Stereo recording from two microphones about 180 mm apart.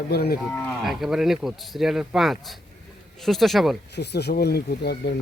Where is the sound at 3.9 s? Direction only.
65° left (ahead or behind).